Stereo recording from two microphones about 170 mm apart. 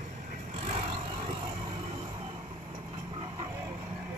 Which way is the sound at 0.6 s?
40° right (ahead or behind).